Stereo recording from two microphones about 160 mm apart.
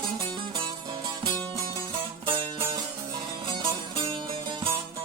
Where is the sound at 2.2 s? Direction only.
30° right (ahead or behind).